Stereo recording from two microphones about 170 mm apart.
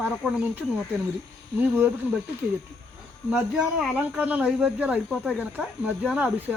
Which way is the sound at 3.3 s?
Centre (ahead or behind).